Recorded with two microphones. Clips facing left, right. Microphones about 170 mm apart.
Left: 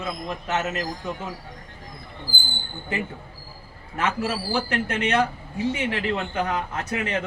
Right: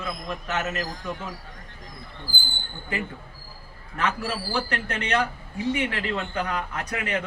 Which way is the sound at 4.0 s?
20° left (ahead or behind).